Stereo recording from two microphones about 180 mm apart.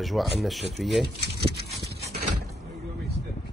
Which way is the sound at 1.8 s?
65° right (ahead or behind).